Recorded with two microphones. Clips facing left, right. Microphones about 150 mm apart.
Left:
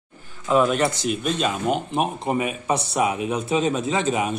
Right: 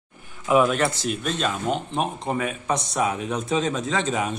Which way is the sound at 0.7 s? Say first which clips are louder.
Left 2 dB; centre (ahead or behind).